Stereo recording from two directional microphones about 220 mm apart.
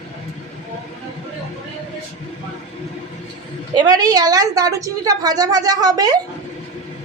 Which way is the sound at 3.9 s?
15° right (ahead or behind).